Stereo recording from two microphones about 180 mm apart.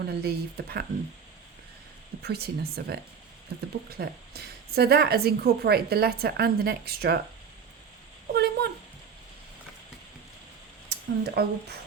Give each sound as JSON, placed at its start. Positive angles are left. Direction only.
{"t": 0.0, "sound": "a woman's voice", "side_deg": -65}
{"t": 2.2, "sound": "a woman's voice", "side_deg": -60}
{"t": 8.3, "sound": "a sound", "side_deg": -65}
{"t": 10.8, "sound": "speech", "side_deg": -65}